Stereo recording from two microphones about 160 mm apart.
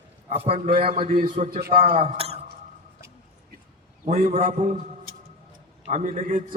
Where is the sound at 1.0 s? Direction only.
55° right (ahead or behind).